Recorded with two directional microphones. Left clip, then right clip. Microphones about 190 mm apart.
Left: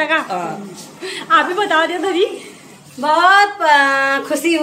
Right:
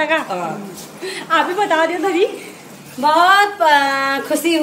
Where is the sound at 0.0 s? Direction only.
10° left (ahead or behind).